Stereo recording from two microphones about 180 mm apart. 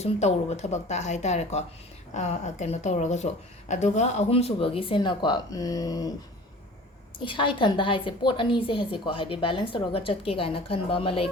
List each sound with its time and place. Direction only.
0.0 s a woman's voice: 40° left (ahead or behind); by 6.1 s 20° left (ahead or behind)
7.2 s a woman's voice: 25° left (ahead or behind)